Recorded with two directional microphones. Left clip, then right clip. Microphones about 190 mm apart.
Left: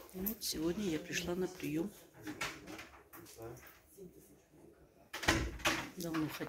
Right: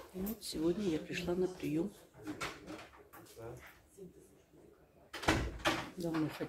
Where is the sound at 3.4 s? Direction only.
35° left (ahead or behind).